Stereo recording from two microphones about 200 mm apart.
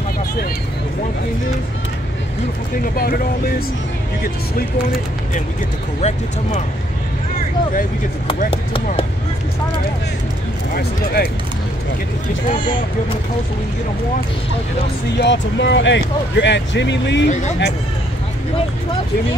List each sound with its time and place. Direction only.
2.8 s speech: 45° left (ahead or behind)
5.9 s speech: 35° left (ahead or behind)
10.7 s speech: 50° left (ahead or behind)
15.1 s speech: 60° left (ahead or behind)
17.3 s speech: 35° left (ahead or behind)